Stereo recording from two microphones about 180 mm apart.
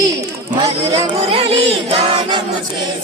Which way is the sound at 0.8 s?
35° right (ahead or behind).